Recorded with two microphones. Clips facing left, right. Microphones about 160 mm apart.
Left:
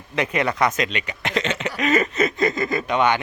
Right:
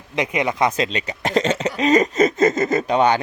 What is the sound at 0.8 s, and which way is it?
Speech, 35° right (ahead or behind).